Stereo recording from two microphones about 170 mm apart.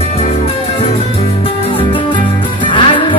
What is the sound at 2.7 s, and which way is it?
Music, 30° left (ahead or behind).